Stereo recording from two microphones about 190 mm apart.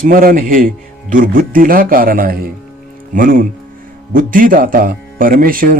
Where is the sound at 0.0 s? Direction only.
50° right (ahead or behind).